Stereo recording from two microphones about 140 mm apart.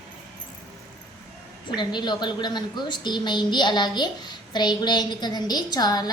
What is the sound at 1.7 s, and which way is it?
A woman's voice, 35° left (ahead or behind).